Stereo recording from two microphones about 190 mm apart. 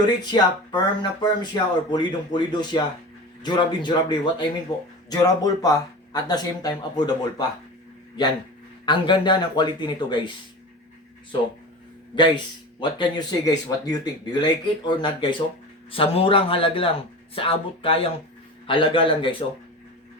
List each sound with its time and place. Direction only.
0.3 s speech: 20° left (ahead or behind)
8.9 s speech: 25° left (ahead or behind)
12.1 s speech: 25° left (ahead or behind)